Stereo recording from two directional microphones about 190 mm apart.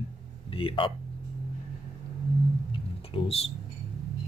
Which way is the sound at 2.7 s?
30° left (ahead or behind).